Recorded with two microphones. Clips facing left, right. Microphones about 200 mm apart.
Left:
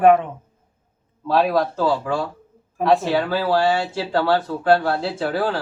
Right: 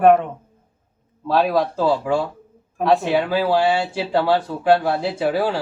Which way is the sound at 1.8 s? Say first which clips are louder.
Right 2 dB; 15° right (ahead or behind).